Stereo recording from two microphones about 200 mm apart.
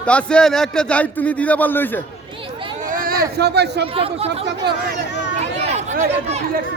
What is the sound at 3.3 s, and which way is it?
Speech, 55° right (ahead or behind).